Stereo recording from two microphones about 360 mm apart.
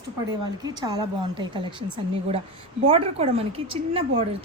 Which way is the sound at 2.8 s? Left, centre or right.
Centre.